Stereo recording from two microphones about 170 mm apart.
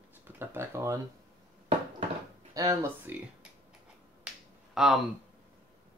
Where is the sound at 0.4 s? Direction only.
15° right (ahead or behind).